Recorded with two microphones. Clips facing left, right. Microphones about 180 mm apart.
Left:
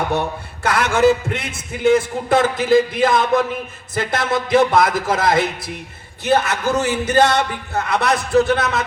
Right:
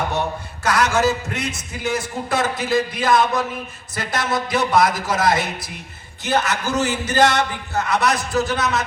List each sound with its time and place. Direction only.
0.6 s a man's voice: 55° left (ahead or behind)